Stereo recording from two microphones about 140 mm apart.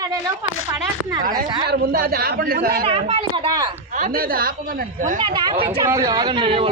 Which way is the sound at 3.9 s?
70° right (ahead or behind).